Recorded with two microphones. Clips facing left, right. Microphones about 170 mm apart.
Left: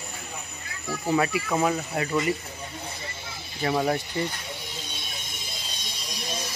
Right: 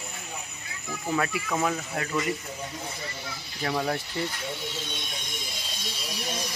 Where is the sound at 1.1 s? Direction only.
10° left (ahead or behind).